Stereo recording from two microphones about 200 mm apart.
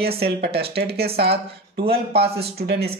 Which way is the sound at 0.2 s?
50° right (ahead or behind).